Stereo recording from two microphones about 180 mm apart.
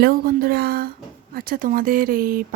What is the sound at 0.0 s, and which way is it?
Speech, 55° right (ahead or behind).